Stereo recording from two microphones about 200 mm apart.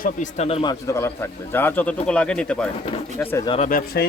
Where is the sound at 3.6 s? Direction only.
50° left (ahead or behind).